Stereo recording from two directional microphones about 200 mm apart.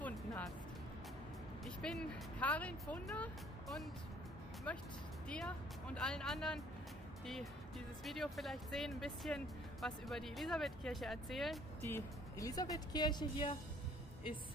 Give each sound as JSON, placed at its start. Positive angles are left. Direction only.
{"t": 0.0, "sound": "music", "side_deg": 5}
{"t": 1.6, "sound": "speech", "side_deg": 5}
{"t": 8.0, "sound": "speech", "side_deg": 0}
{"t": 11.9, "sound": "speech", "side_deg": 15}